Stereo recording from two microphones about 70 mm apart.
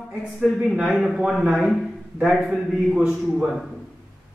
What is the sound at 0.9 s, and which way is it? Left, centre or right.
A man's voice, centre.